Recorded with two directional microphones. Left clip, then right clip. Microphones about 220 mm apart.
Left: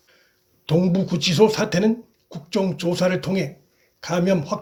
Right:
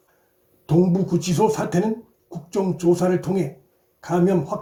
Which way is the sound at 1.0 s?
25° left (ahead or behind).